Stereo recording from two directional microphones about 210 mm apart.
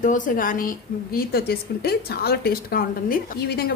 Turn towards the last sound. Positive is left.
turn(degrees=50)  # may be behind; listen again after turning